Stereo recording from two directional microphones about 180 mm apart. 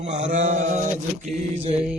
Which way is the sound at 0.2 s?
45° right (ahead or behind).